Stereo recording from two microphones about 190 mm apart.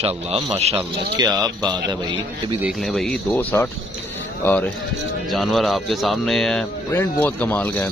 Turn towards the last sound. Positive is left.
turn(degrees=10)  # may be behind; listen again after turning